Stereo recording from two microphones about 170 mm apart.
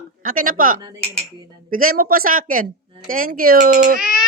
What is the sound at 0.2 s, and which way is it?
Speech, 55° right (ahead or behind).